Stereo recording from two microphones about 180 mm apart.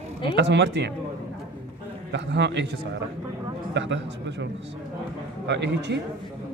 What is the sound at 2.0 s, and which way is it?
A man's voice, 75° right (ahead or behind).